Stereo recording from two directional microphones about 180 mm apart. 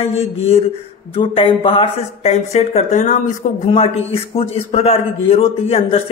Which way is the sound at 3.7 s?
30° left (ahead or behind).